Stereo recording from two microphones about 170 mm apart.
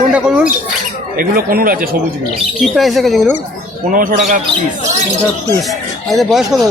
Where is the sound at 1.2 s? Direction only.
60° right (ahead or behind).